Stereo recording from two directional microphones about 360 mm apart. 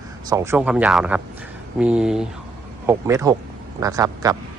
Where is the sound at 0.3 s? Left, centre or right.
Centre.